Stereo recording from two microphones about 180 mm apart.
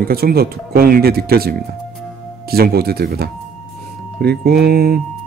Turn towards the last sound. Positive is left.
turn(degrees=-60)  # may be behind; listen again after turning